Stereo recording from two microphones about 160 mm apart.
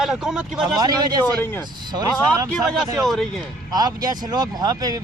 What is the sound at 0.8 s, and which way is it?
Speech, 25° right (ahead or behind).